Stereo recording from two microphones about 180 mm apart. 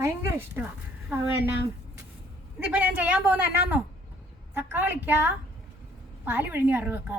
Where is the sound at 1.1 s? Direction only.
15° right (ahead or behind).